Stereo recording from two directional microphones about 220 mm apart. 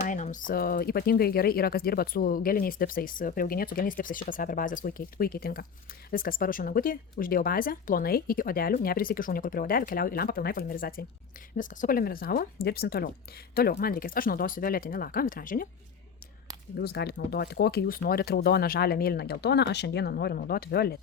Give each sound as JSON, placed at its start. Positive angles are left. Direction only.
{"t": 0.1, "sound": "speech", "side_deg": 35}
{"t": 16.7, "sound": "speech", "side_deg": 45}